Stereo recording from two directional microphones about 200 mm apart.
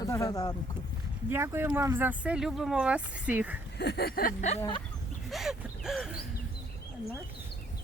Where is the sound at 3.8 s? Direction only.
55° left (ahead or behind); by 4.8 s 30° left (ahead or behind).